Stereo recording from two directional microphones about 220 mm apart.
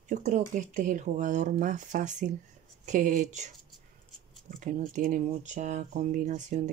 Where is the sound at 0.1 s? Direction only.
35° right (ahead or behind).